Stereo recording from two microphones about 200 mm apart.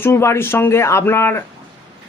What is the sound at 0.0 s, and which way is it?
Speech, 15° left (ahead or behind).